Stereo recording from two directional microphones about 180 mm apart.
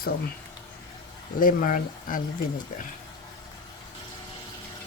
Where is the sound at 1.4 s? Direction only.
50° left (ahead or behind).